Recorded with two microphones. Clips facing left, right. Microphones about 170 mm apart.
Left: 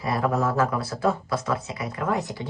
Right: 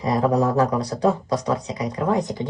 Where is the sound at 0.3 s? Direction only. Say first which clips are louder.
Right 4 dB; 15° right (ahead or behind).